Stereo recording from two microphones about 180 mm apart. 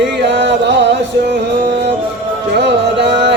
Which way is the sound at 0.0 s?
75° right (ahead or behind).